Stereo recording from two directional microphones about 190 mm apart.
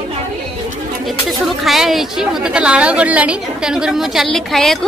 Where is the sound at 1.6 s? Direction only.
Centre (ahead or behind).